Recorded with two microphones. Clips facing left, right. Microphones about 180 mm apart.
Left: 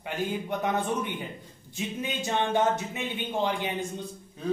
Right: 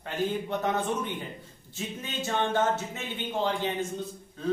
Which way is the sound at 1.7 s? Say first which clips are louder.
Left 3 dB; 15° left (ahead or behind).